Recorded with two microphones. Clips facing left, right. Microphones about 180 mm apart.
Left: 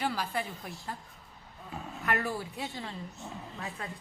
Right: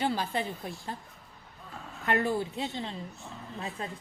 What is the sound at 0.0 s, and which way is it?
Speech, 25° right (ahead or behind).